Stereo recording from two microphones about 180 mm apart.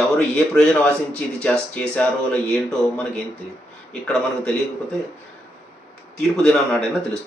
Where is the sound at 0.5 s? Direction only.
5° left (ahead or behind).